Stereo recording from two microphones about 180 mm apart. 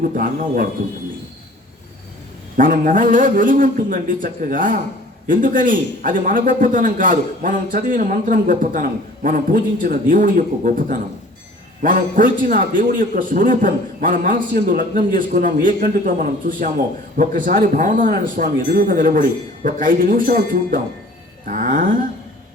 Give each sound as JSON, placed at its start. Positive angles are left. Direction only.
{"t": 0.2, "sound": "a man's voice", "side_deg": -55}
{"t": 2.6, "sound": "a man's voice", "side_deg": -50}